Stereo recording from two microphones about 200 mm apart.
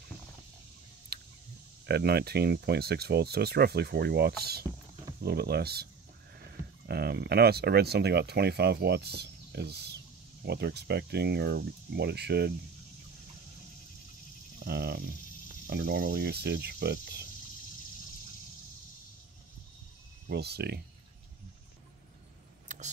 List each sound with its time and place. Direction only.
1.9 s speech: 55° right (ahead or behind)
6.9 s speech: 50° right (ahead or behind)
14.6 s speech: 55° right (ahead or behind)
20.2 s speech: 55° right (ahead or behind)
22.7 s vehicle: 35° right (ahead or behind)